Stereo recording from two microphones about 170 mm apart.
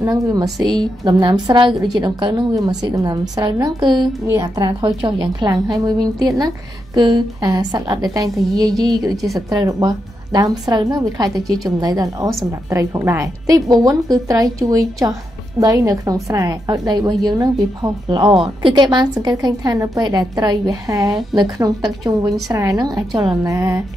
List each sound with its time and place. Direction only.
0.0 s a woman's voice: 20° right (ahead or behind)
21.1 s a woman's voice: centre (ahead or behind)
21.4 s a woman's voice: 25° right (ahead or behind)